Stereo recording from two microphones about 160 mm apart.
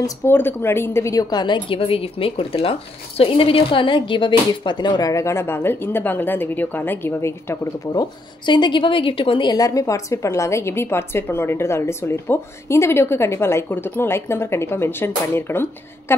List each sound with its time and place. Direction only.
0.0 s a woman's voice: 15° left (ahead or behind)